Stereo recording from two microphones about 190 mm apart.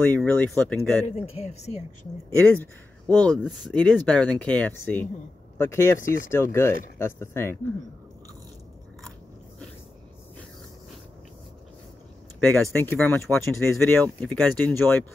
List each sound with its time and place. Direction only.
0.1 s speech: 10° left (ahead or behind)
1.0 s speech: 35° left (ahead or behind)
2.3 s speech: 10° left (ahead or behind)
12.4 s speech: 10° left (ahead or behind)